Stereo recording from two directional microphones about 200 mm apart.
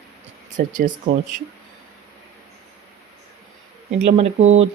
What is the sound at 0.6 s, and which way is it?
Speech, 40° right (ahead or behind).